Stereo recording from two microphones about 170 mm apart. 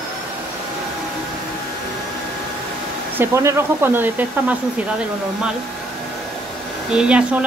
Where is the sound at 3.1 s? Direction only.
15° right (ahead or behind).